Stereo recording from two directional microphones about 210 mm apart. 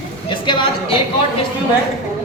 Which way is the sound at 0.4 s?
20° left (ahead or behind).